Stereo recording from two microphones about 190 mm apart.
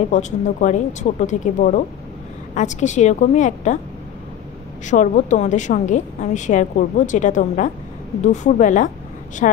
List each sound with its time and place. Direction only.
0.1 s a woman's voice: 40° left (ahead or behind)
4.8 s a woman's voice: 40° left (ahead or behind)